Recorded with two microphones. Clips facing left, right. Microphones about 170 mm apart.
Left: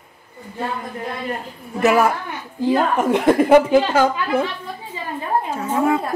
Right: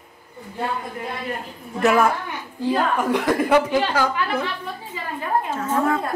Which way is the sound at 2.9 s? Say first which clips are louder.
Left 5 dB; 25° left (ahead or behind).